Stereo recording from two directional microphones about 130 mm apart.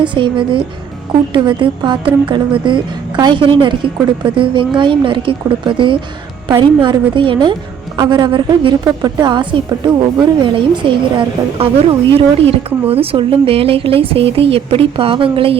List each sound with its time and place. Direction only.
0.0 s speech: 40° right (ahead or behind)